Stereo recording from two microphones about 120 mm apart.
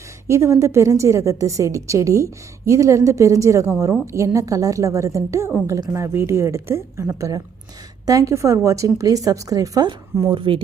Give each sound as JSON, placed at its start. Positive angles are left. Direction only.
{"t": 0.3, "sound": "a woman's voice", "side_deg": -25}
{"t": 10.3, "sound": "speech", "side_deg": -45}